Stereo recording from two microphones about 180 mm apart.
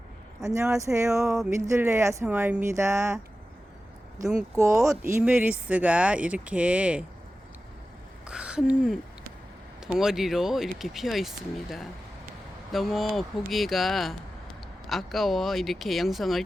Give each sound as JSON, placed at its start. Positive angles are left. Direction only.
{"t": 0.4, "sound": "speech", "side_deg": -15}
{"t": 1.2, "sound": "speech", "side_deg": 0}
{"t": 1.6, "sound": "speech", "side_deg": -15}
{"t": 4.5, "sound": "speech", "side_deg": -15}
{"t": 4.8, "sound": "speech", "side_deg": -5}
{"t": 8.3, "sound": "a sound", "side_deg": -5}
{"t": 10.0, "sound": "speech", "side_deg": 0}